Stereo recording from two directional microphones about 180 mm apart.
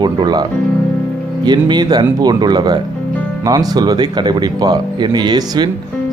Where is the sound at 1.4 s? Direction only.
25° right (ahead or behind).